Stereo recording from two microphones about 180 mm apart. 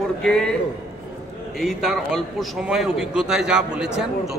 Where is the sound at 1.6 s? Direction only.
Centre (ahead or behind).